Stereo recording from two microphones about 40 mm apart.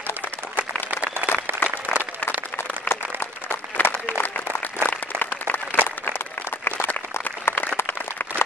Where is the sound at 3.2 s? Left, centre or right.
Left.